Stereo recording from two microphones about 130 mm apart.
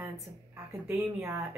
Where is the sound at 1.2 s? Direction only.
25° right (ahead or behind).